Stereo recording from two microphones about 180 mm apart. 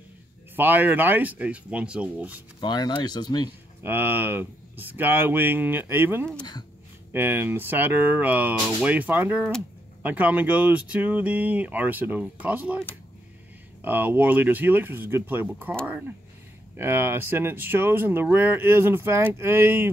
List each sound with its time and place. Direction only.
0.6 s speech: 10° right (ahead or behind)
2.6 s speech: 25° left (ahead or behind)
3.8 s speech: 10° right (ahead or behind)
13.8 s speech: 10° right (ahead or behind)
16.7 s speech: 10° right (ahead or behind)